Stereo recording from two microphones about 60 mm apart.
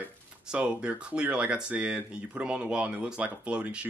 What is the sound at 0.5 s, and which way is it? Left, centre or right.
Speech, centre.